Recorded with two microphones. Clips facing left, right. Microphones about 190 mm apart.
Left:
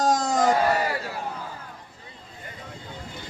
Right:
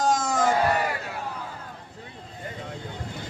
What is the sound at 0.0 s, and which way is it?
Crowd, 40° left (ahead or behind).